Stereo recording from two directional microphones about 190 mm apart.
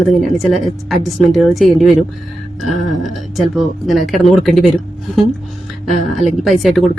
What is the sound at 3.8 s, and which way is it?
Speech, centre (ahead or behind).